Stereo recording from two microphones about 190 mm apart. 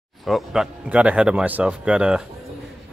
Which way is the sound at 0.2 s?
Centre (ahead or behind).